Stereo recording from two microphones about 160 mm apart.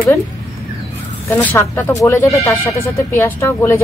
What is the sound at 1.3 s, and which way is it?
Speech, 10° left (ahead or behind).